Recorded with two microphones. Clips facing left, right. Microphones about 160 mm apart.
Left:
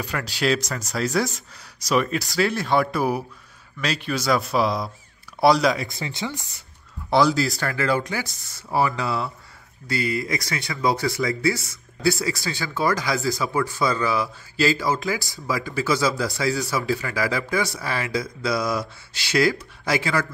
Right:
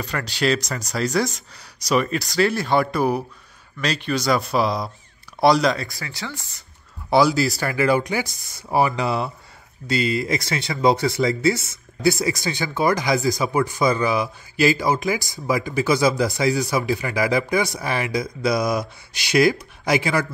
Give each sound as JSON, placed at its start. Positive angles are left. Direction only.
{"t": 0.0, "sound": "speech", "side_deg": 5}
{"t": 5.8, "sound": "speech", "side_deg": 20}
{"t": 7.1, "sound": "speech", "side_deg": -5}